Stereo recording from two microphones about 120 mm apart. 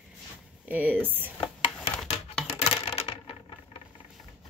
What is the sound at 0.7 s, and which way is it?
Speech, 15° right (ahead or behind).